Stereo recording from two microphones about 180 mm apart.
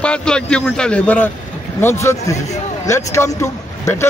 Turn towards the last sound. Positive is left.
turn(degrees=15)  # may be behind; listen again after turning